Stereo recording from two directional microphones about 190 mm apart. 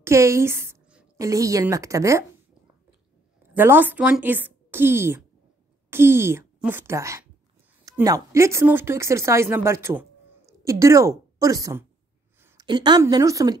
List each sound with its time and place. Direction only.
0.0 s a woman's voice: 15° right (ahead or behind)
3.5 s a woman's voice: 10° right (ahead or behind)